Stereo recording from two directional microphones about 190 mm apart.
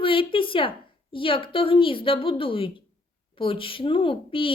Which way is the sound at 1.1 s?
25° left (ahead or behind).